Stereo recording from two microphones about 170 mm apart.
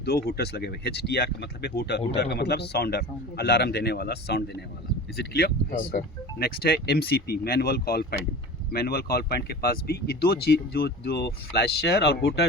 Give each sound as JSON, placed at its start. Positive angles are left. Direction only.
{"t": 0.0, "sound": "speech", "side_deg": 70}